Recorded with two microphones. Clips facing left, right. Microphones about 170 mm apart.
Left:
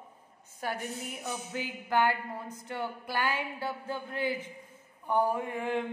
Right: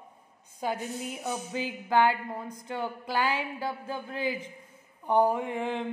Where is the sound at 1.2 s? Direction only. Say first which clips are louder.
Right 4 dB; 15° right (ahead or behind).